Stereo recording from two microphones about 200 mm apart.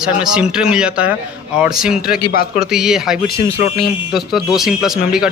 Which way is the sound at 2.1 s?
50° left (ahead or behind).